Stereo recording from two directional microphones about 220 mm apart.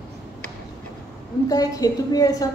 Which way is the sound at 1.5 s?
15° left (ahead or behind).